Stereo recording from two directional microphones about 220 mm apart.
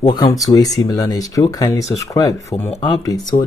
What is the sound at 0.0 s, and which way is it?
Speech, 15° left (ahead or behind).